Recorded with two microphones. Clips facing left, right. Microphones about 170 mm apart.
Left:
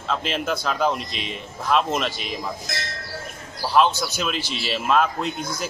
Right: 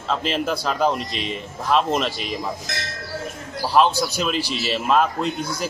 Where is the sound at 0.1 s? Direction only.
Centre (ahead or behind).